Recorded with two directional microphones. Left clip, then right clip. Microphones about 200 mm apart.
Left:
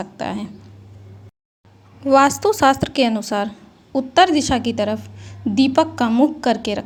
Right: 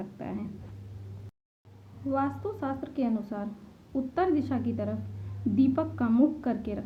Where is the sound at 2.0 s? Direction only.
50° left (ahead or behind).